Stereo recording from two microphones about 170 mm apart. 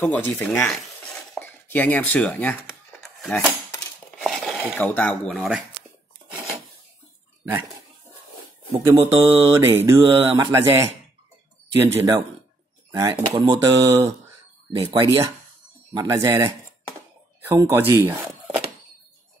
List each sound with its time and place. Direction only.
0.0 s dishes: 10° left (ahead or behind)
3.0 s a sound: centre (ahead or behind)
4.7 s speech: 10° left (ahead or behind)
8.7 s speech: 15° right (ahead or behind)
13.3 s speech: 25° right (ahead or behind)